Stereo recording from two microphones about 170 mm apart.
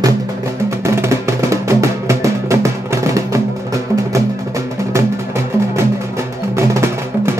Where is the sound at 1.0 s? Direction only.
15° right (ahead or behind).